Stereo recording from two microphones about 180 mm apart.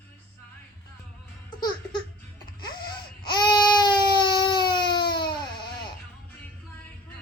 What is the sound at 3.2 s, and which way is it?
Baby cry, 25° left (ahead or behind).